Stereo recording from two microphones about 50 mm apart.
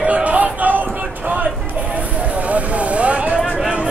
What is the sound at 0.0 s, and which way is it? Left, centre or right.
Basketball bounce, right.